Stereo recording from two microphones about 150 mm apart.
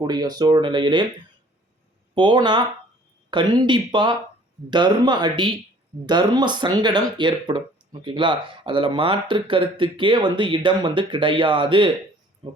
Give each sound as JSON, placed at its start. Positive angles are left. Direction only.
{"t": 0.0, "sound": "speech", "side_deg": -25}
{"t": 2.1, "sound": "speech", "side_deg": -30}